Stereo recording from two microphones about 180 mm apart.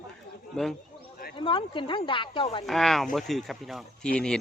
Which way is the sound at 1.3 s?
30° left (ahead or behind).